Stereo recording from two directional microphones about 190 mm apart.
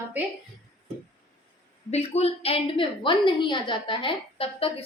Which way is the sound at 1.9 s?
35° left (ahead or behind).